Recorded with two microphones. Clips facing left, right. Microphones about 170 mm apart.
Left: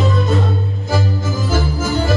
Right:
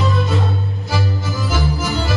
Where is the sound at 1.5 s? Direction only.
50° left (ahead or behind).